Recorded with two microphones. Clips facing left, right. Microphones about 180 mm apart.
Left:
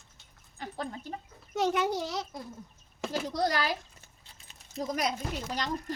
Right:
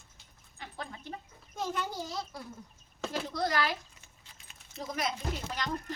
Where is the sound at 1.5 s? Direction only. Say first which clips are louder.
Left 7 dB; 80° left.